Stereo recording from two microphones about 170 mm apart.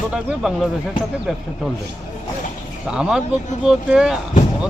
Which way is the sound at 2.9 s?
5° right (ahead or behind).